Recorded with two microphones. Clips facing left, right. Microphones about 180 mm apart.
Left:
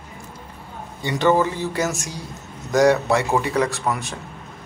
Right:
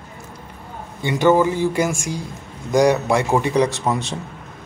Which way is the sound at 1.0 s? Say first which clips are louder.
Right 3 dB; 10° right (ahead or behind).